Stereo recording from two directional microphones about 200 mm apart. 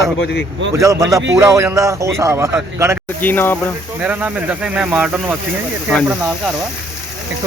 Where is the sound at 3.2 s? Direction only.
10° left (ahead or behind).